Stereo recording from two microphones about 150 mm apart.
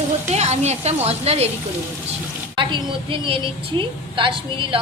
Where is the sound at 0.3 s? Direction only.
45° right (ahead or behind).